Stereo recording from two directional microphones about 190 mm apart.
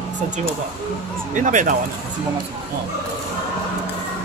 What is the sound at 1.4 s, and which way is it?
Speech, 40° right (ahead or behind).